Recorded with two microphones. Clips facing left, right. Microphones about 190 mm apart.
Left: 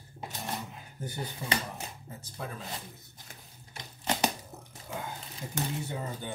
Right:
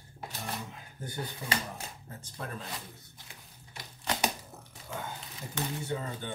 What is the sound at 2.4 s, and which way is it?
Speech, 5° left (ahead or behind).